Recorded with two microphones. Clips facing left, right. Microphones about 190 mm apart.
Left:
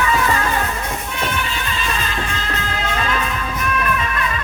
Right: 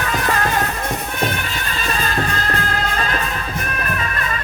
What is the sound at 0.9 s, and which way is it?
Music, 45° right (ahead or behind).